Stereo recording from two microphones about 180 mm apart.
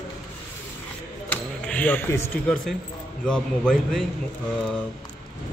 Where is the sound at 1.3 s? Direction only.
5° left (ahead or behind).